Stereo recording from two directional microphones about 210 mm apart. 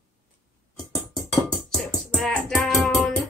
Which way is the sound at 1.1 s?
Centre (ahead or behind).